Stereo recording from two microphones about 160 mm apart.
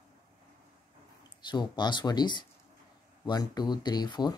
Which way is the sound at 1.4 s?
25° left (ahead or behind).